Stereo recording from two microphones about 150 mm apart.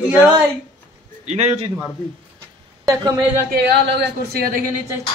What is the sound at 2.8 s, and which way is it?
Speech, 25° right (ahead or behind).